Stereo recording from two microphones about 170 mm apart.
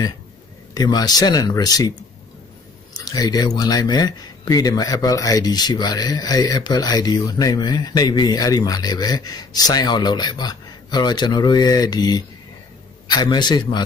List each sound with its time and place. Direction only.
0.7 s speech: 25° left (ahead or behind)